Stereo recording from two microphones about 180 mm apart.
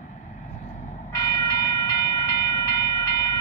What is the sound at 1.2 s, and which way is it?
Train, 20° left (ahead or behind).